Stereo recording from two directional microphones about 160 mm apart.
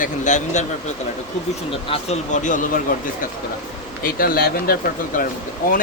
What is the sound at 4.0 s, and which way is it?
Speech, 65° left (ahead or behind).